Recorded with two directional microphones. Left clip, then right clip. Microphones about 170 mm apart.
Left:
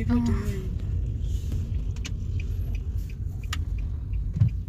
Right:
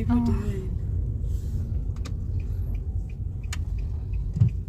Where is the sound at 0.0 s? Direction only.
5° right (ahead or behind).